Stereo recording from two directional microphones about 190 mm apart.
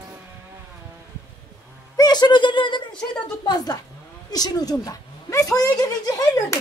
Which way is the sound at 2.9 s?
5° left (ahead or behind).